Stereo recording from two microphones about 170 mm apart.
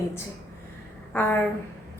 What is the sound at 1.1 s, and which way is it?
Speech, 10° left (ahead or behind).